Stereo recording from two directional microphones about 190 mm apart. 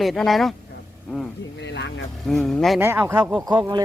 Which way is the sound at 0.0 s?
Centre (ahead or behind).